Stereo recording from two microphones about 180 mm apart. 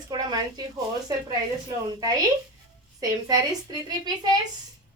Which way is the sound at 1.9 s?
20° right (ahead or behind).